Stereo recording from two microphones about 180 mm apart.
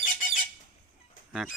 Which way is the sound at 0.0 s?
45° left (ahead or behind).